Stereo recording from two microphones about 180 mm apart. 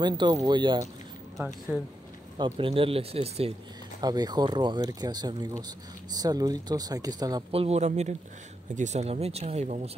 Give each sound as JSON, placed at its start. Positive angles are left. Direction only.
{"t": 0.0, "sound": "speech", "side_deg": -25}
{"t": 2.3, "sound": "speech", "side_deg": -30}
{"t": 4.0, "sound": "speech", "side_deg": -20}
{"t": 7.5, "sound": "speech", "side_deg": -35}